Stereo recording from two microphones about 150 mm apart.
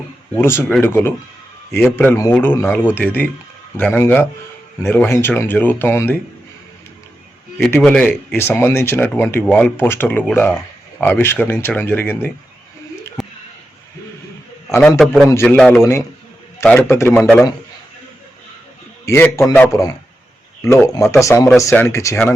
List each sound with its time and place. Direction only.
0.3 s speech: 15° left (ahead or behind)
7.8 s speech: 5° left (ahead or behind)
14.9 s a man's voice: centre (ahead or behind)
16.6 s speech: 15° left (ahead or behind)
19.0 s a man's voice: 15° left (ahead or behind)